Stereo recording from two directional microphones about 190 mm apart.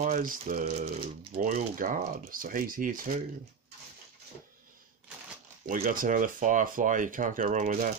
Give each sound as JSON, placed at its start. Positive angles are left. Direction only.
{"t": 0.0, "sound": "speech", "side_deg": -45}
{"t": 5.8, "sound": "speech", "side_deg": -45}